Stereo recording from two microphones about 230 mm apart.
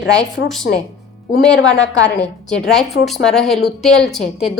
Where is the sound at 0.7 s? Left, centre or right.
Left.